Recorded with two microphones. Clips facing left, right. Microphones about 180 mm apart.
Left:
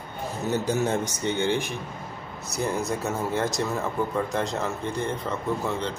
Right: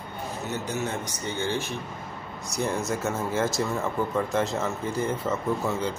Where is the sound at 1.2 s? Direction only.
20° left (ahead or behind).